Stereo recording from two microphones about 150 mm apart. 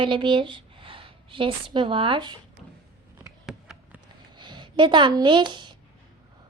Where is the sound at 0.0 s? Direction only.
35° right (ahead or behind).